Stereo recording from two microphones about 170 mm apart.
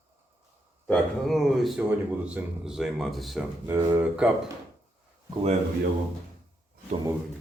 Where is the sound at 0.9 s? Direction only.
Centre (ahead or behind).